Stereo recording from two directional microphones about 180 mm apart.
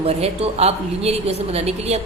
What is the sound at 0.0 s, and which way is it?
A woman's voice, 35° right (ahead or behind).